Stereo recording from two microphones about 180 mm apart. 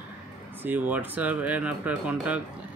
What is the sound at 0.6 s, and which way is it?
Speech, 10° right (ahead or behind).